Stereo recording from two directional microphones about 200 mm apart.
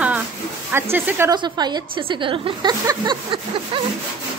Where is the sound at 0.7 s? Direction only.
10° right (ahead or behind).